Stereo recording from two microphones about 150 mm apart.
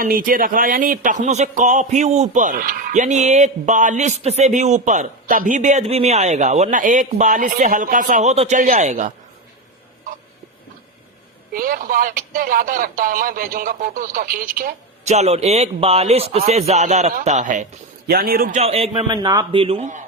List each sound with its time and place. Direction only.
0.0 s speech: 70° right (ahead or behind); by 9.1 s 50° right (ahead or behind)
11.5 s speech: 75° right (ahead or behind)
15.0 s a man's voice: 45° right (ahead or behind)
18.1 s a man's voice: 90° right
18.5 s speech: 40° right (ahead or behind)
19.0 s speech: 30° right (ahead or behind)